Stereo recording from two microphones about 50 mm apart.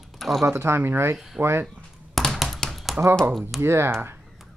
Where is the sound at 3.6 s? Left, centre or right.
Right.